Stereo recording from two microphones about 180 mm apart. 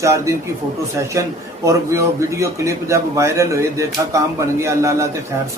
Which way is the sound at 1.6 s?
15° right (ahead or behind).